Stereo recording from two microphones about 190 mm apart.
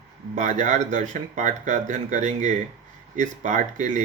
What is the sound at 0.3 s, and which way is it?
Speech, 40° right (ahead or behind).